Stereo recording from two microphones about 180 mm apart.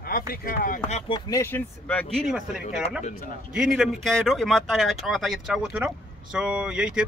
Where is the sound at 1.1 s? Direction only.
15° left (ahead or behind).